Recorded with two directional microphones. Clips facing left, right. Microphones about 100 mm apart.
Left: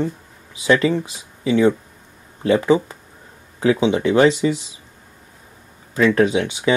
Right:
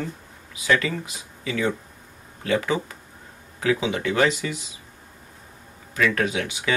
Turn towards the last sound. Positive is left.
turn(degrees=30)  # may be behind; listen again after turning